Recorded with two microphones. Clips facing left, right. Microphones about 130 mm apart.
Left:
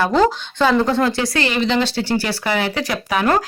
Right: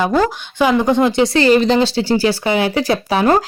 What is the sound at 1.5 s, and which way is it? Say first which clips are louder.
Speech: right 6 dB; 40° right (ahead or behind).